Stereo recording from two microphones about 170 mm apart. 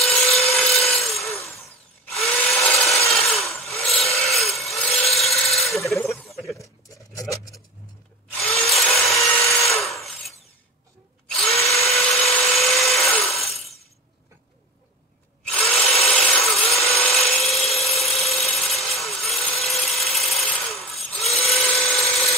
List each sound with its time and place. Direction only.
0.0 s wood: centre (ahead or behind)
2.0 s tools: centre (ahead or behind)
3.1 s wood: centre (ahead or behind)
6.0 s a sound: centre (ahead or behind)
8.4 s wood: centre (ahead or behind)
9.4 s tools: centre (ahead or behind)
11.2 s drill: centre (ahead or behind)
15.8 s tools: centre (ahead or behind)